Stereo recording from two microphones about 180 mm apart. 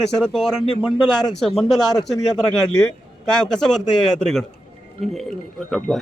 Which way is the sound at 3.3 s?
5° left (ahead or behind).